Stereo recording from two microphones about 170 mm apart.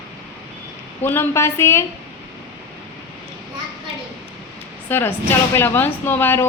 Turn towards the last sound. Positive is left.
turn(degrees=15)  # may be behind; listen again after turning